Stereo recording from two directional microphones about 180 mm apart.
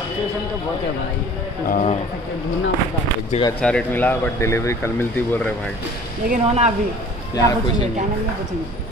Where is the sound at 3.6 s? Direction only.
5° left (ahead or behind).